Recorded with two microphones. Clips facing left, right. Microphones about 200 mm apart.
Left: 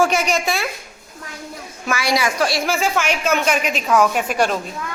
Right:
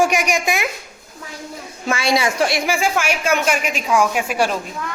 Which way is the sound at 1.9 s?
25° right (ahead or behind).